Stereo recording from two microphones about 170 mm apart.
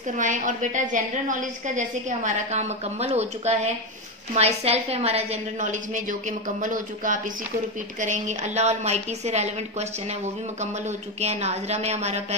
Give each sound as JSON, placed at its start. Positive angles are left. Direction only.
{"t": 0.2, "sound": "a woman's voice", "side_deg": -50}